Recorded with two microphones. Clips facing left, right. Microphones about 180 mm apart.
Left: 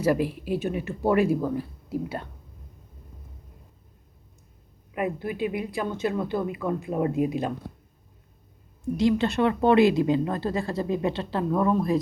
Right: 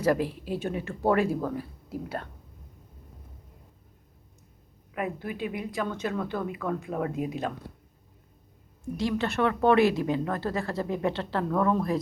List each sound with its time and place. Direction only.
0.0 s a woman's voice: 10° left (ahead or behind)
4.9 s a woman's voice: 10° left (ahead or behind)
9.0 s a woman's voice: 15° left (ahead or behind)